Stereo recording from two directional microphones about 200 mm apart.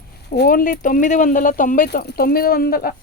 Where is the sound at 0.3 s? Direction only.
50° left (ahead or behind).